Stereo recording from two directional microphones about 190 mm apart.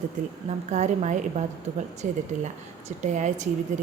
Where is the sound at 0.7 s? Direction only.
40° right (ahead or behind).